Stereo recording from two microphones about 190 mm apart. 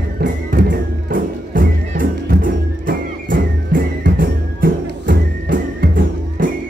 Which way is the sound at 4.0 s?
50° right (ahead or behind).